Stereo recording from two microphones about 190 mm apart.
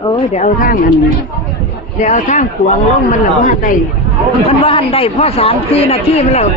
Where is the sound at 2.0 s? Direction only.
40° left (ahead or behind).